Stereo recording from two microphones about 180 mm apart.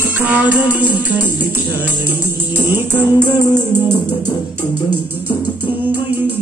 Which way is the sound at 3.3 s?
20° left (ahead or behind).